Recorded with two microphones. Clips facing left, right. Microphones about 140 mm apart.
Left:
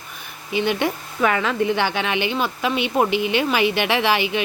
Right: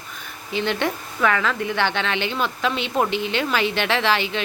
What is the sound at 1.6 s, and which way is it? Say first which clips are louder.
Speech: left 4 dB; 25° left (ahead or behind).